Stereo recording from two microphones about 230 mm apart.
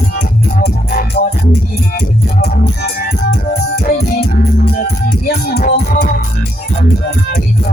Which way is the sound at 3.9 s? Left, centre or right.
Left.